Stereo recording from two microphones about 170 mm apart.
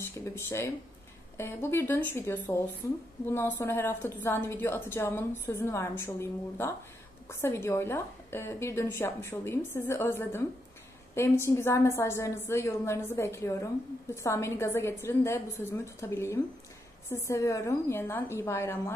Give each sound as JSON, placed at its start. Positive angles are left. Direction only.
{"t": 0.0, "sound": "a woman's voice", "side_deg": 15}